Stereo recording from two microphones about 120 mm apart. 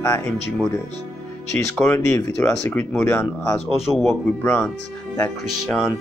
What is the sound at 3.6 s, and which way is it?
Speech, centre (ahead or behind).